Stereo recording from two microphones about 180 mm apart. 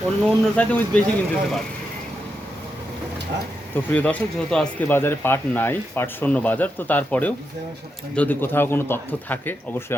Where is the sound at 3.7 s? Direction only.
10° left (ahead or behind).